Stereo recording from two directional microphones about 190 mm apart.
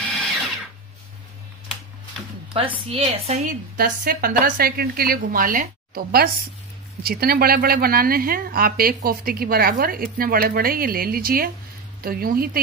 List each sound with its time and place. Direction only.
2.5 s speech: 30° right (ahead or behind); by 12.4 s 50° right (ahead or behind)